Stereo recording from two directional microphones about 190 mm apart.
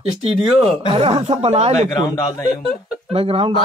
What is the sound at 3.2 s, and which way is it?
Speech, 30° right (ahead or behind).